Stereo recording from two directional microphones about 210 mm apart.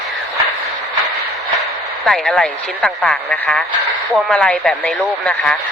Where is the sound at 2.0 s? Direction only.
Centre (ahead or behind).